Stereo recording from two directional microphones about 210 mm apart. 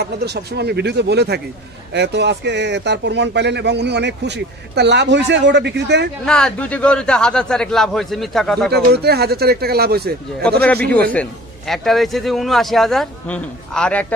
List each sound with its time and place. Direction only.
0.0 s speech: 50° right (ahead or behind)
6.2 s a man's voice: 5° left (ahead or behind)
8.6 s speech: 50° right (ahead or behind)
10.6 s a man's voice: 5° left (ahead or behind)